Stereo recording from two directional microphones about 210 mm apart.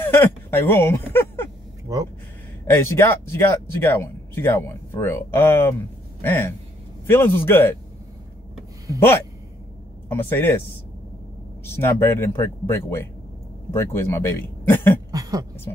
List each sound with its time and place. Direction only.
0.0 s a sound: 10° left (ahead or behind)
1.9 s speech: 15° right (ahead or behind)
2.6 s speech: 10° left (ahead or behind)
10.0 s speech: 10° left (ahead or behind)
11.6 s speech: 10° left (ahead or behind)
15.0 s a sound: 15° right (ahead or behind)